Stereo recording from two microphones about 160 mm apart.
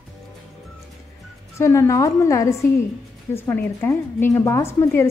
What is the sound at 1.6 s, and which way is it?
A woman's voice, 20° left (ahead or behind).